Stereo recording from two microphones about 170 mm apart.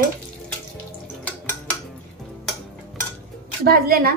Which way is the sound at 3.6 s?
60° right (ahead or behind).